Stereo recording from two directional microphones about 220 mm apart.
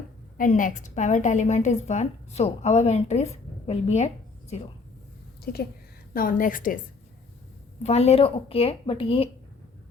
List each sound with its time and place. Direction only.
0.3 s a woman's voice: 35° left (ahead or behind)
5.4 s a sound: 45° left (ahead or behind)
6.1 s a woman's voice: 40° left (ahead or behind)
7.9 s speech: 30° left (ahead or behind)